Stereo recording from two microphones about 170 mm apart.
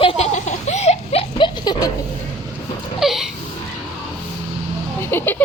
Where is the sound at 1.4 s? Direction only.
25° left (ahead or behind).